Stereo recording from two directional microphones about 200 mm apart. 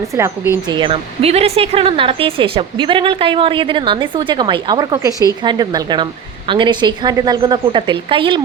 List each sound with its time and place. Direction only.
0.7 s speech: 25° right (ahead or behind)